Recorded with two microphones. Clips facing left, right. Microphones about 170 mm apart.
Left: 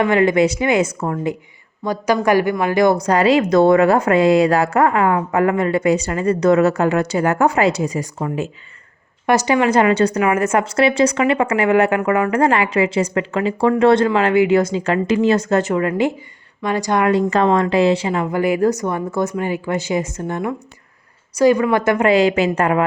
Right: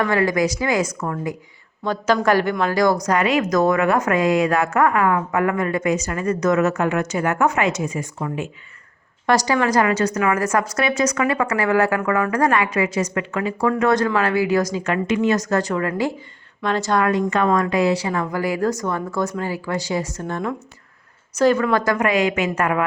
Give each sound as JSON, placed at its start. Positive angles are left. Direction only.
{"t": 0.0, "sound": "speech", "side_deg": 20}
{"t": 1.8, "sound": "a woman's voice", "side_deg": 15}
{"t": 9.5, "sound": "a woman's voice", "side_deg": 25}
{"t": 17.1, "sound": "speech", "side_deg": 35}